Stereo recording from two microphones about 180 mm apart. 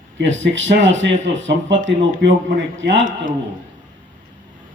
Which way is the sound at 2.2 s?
70° right (ahead or behind).